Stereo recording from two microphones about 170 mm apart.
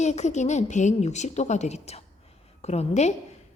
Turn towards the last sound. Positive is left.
turn(degrees=40)  # may be behind; listen again after turning